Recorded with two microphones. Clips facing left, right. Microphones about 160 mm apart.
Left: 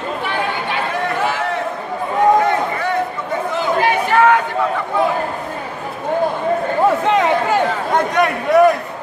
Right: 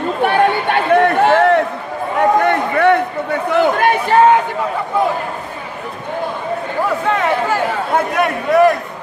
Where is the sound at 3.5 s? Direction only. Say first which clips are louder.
Right 5 dB; 60° right (ahead or behind).